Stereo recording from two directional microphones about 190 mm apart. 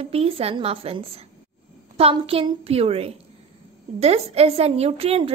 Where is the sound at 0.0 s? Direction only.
30° right (ahead or behind).